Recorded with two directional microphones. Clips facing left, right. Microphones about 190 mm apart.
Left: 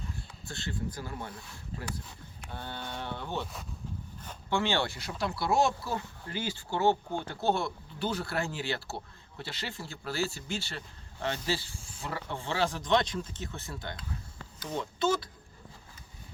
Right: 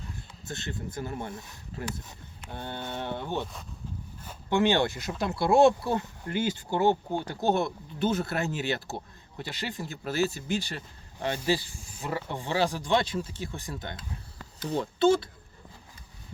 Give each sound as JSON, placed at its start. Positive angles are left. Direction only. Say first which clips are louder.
{"t": 0.4, "sound": "speech", "louder": "right 1 dB", "side_deg": -20}
{"t": 4.2, "sound": "a sound", "louder": "right 2 dB", "side_deg": -10}
{"t": 4.5, "sound": "speech", "louder": "right 6 dB", "side_deg": -20}
{"t": 14.7, "sound": "speech", "louder": "right 7 dB", "side_deg": -35}